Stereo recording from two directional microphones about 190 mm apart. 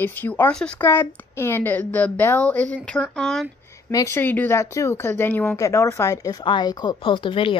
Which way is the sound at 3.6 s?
15° left (ahead or behind).